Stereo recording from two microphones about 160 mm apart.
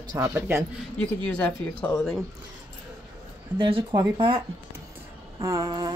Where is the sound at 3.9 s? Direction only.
30° right (ahead or behind).